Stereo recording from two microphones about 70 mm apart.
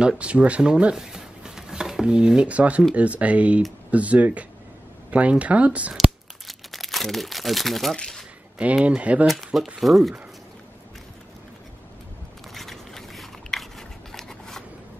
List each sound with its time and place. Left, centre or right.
0.0 s speech: centre
5.9 s crumpling: centre
8.5 s speech: centre
9.3 s speech: centre
12.5 s scissors: centre